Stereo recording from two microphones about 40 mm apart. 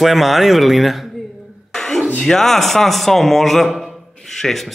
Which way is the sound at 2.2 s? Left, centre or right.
Centre.